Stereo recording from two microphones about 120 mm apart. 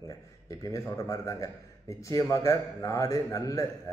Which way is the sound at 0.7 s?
30° left (ahead or behind).